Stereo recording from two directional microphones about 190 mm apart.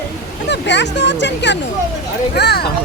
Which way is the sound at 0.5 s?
65° left (ahead or behind).